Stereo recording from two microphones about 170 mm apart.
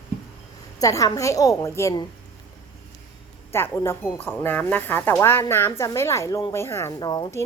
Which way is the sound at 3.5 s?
15° left (ahead or behind).